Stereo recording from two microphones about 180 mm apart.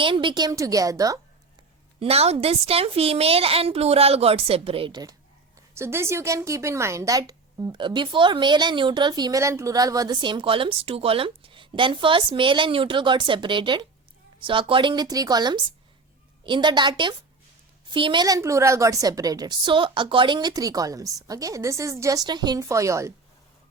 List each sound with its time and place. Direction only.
0.0 s a woman's voice: 25° right (ahead or behind)
2.0 s a woman's voice: 35° right (ahead or behind); by 23.1 s 15° right (ahead or behind)